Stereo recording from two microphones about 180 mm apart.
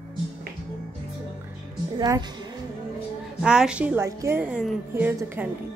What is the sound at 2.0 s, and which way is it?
Speech, 25° right (ahead or behind).